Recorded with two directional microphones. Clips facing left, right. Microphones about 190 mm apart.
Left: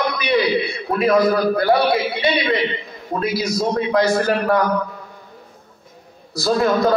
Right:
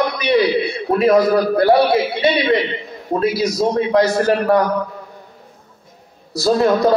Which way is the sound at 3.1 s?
20° right (ahead or behind).